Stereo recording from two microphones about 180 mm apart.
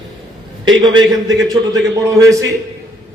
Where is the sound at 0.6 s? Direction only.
25° right (ahead or behind).